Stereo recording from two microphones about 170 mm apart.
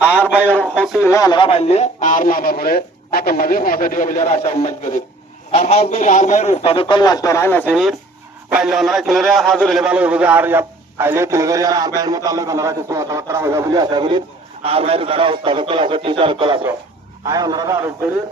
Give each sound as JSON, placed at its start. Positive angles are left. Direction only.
{"t": 0.0, "sound": "a man's voice", "side_deg": 10}